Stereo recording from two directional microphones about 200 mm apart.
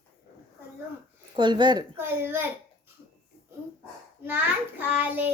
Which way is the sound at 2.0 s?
10° right (ahead or behind).